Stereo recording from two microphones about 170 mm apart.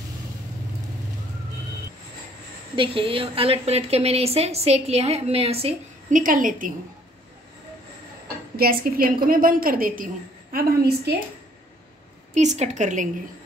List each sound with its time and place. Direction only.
2.7 s a woman's voice: 30° right (ahead or behind)
6.1 s a woman's voice: 50° right (ahead or behind)
8.5 s a woman's voice: 60° right (ahead or behind)
12.4 s a woman's voice: 45° right (ahead or behind)